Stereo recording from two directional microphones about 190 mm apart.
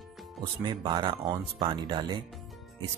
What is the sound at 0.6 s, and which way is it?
Speech, 25° right (ahead or behind).